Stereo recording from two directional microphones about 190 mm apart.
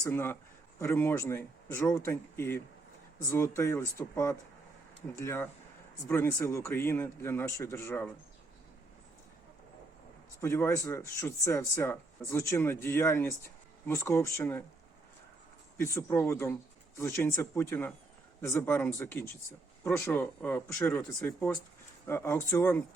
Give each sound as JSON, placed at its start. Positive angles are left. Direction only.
{"t": 0.0, "sound": "speech", "side_deg": 10}
{"t": 10.4, "sound": "speech", "side_deg": 15}
{"t": 15.8, "sound": "speech", "side_deg": 15}